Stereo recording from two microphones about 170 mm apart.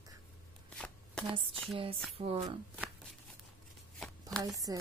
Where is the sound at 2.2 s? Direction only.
35° right (ahead or behind).